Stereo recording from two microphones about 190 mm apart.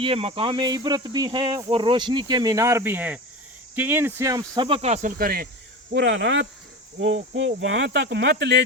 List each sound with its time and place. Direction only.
0.0 s speech: 30° right (ahead or behind); by 5.5 s 50° right (ahead or behind)
5.9 s speech: 65° right (ahead or behind)
7.0 s speech: 80° right; by 8.6 s 65° right (ahead or behind)